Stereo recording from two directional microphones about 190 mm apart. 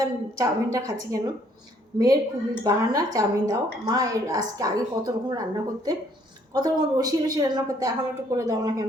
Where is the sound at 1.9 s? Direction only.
20° right (ahead or behind).